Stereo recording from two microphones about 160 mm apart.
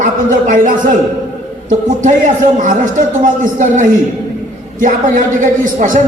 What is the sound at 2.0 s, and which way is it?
A man's voice, 50° right (ahead or behind).